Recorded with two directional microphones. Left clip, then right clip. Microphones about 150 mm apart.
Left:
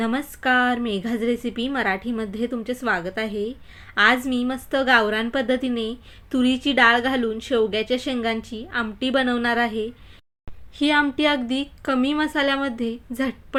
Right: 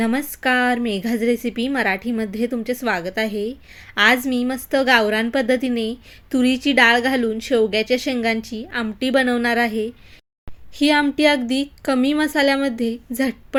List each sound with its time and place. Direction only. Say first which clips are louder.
0.0 s a woman's voice: right 3 dB; 20° right (ahead or behind)